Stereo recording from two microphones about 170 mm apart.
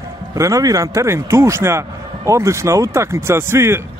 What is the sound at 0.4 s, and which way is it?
A man's voice, 20° right (ahead or behind).